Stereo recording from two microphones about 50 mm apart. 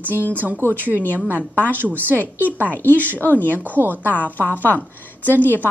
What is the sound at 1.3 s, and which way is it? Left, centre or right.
A woman's voice, right.